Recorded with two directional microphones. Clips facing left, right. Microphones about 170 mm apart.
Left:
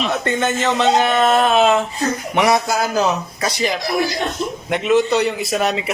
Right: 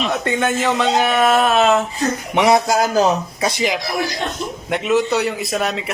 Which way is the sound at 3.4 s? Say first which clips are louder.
Right 1 dB; 15° right (ahead or behind).